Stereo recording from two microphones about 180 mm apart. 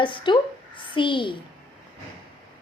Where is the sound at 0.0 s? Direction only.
25° left (ahead or behind).